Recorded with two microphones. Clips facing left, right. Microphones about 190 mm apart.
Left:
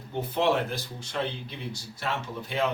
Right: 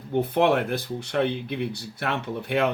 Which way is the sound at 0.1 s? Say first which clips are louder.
Right 5 dB; 60° right (ahead or behind).